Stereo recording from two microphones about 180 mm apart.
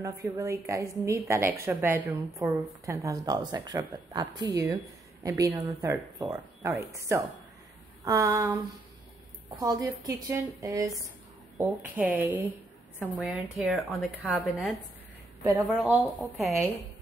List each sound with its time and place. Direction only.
0.0 s a woman's voice: 15° right (ahead or behind)
9.6 s a woman's voice: 20° right (ahead or behind); by 16.5 s centre (ahead or behind)